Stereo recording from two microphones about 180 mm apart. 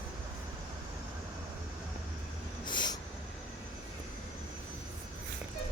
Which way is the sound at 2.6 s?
25° left (ahead or behind).